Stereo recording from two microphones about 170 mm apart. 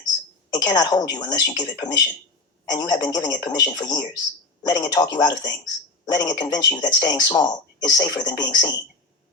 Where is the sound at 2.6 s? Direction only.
25° left (ahead or behind).